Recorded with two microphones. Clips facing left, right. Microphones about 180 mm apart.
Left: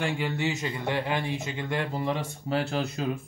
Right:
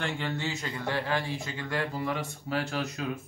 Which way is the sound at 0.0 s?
10° left (ahead or behind).